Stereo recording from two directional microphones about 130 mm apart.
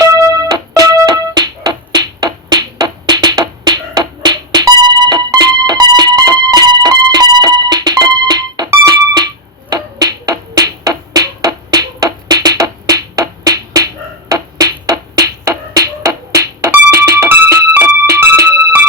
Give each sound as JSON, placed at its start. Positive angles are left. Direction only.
{"t": 0.0, "sound": "music", "side_deg": -30}